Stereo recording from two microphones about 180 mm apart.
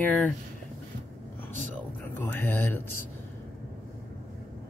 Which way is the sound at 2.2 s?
10° left (ahead or behind).